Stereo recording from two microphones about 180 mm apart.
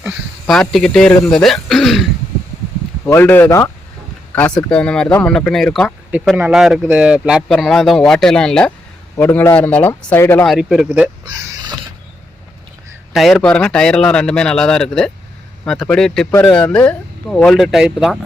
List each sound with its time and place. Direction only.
0.0 s speech: centre (ahead or behind)
3.1 s speech: 10° left (ahead or behind)
10.4 s speech: centre (ahead or behind)
11.3 s a sound: 20° right (ahead or behind)
13.1 s speech: centre (ahead or behind)